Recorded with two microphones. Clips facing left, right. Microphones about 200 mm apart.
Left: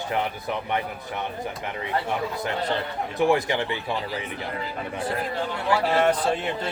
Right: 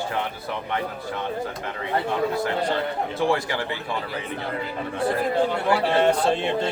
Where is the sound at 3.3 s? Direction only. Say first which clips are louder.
Left 2 dB; 20° left (ahead or behind).